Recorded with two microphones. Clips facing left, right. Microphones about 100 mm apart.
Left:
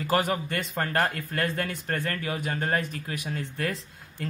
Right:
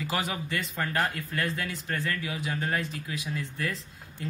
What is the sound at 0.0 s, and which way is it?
A man's voice, 45° left (ahead or behind).